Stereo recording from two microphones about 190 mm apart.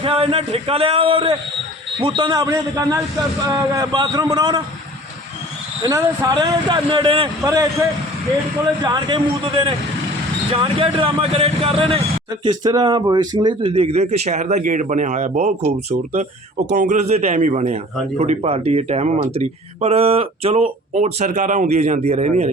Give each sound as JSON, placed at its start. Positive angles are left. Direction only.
{"t": 0.0, "sound": "speech", "side_deg": -30}
{"t": 5.8, "sound": "speech", "side_deg": -20}